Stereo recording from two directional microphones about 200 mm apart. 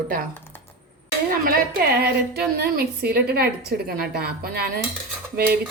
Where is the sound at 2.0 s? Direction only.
50° right (ahead or behind).